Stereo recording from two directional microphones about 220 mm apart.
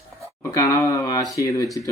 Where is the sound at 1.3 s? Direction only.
15° left (ahead or behind).